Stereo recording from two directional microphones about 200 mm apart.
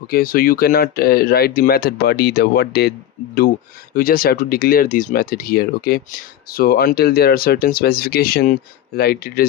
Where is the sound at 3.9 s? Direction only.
45° left (ahead or behind).